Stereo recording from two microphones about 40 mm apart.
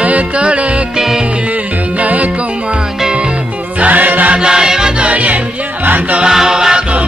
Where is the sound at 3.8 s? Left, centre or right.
Right.